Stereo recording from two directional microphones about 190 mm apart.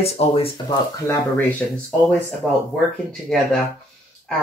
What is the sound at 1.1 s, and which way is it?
Speech, 10° left (ahead or behind).